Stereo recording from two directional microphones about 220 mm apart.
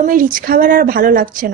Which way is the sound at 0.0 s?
40° right (ahead or behind).